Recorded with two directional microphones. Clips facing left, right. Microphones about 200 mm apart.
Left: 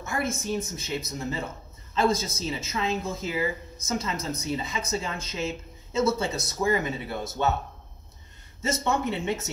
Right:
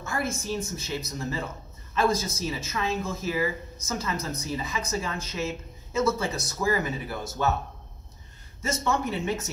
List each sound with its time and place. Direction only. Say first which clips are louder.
0.0 s speech: left 1 dB; 20° left (ahead or behind)
8.6 s speech: left 1 dB; 25° left (ahead or behind)